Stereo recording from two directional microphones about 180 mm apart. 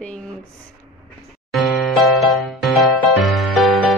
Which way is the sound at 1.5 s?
Centre (ahead or behind).